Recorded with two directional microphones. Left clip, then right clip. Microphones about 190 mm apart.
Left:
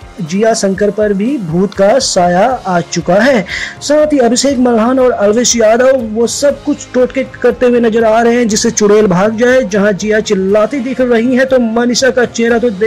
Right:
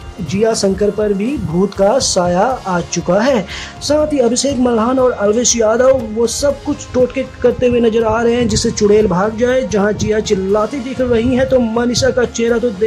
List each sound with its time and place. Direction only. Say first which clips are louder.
0.4 s a man's voice: left 3 dB; 5° left (ahead or behind)